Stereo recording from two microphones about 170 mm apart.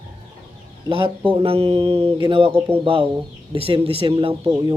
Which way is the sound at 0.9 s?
30° right (ahead or behind).